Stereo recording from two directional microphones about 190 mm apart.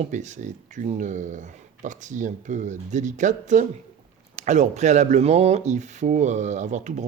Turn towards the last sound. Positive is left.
turn(degrees=-40)  # may be behind; listen again after turning